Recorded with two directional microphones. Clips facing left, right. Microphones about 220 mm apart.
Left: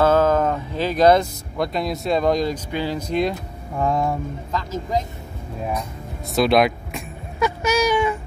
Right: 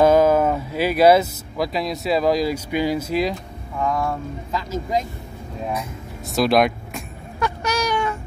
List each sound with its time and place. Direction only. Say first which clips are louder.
0.0 s speech: right 2 dB; 10° right (ahead or behind)
3.7 s speech: left 2 dB; 30° left (ahead or behind)
6.3 s vehicle: left 1 dB; centre (ahead or behind)